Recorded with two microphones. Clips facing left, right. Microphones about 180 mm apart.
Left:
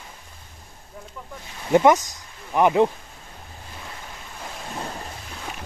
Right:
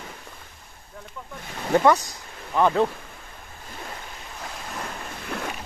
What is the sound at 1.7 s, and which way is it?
Speech, 15° left (ahead or behind).